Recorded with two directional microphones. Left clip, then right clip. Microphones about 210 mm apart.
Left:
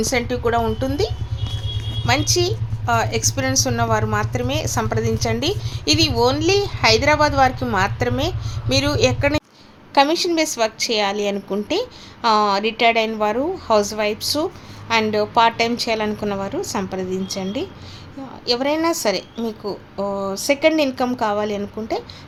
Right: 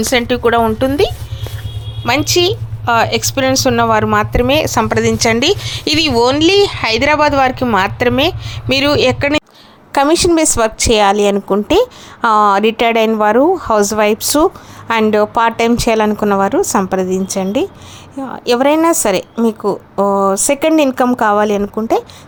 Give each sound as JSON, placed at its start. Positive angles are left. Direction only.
{"t": 0.0, "sound": "a woman's voice", "side_deg": -35}